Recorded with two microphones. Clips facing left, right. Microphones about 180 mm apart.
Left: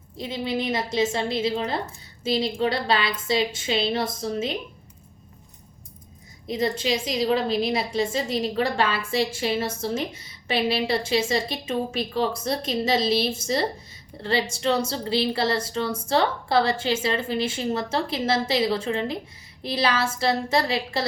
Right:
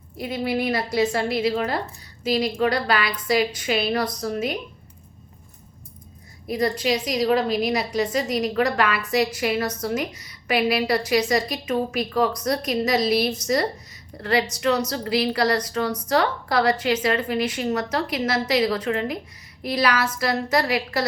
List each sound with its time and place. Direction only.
0.2 s a woman's voice: 20° left (ahead or behind)
6.5 s a woman's voice: 25° left (ahead or behind)